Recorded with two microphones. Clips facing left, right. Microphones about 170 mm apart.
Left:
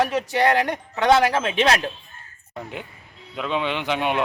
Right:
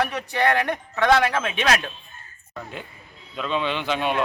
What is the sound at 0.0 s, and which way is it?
Speech, 25° left (ahead or behind).